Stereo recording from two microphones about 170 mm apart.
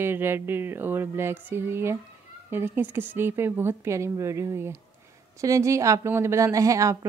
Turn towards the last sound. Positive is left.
turn(degrees=-20)  # may be behind; listen again after turning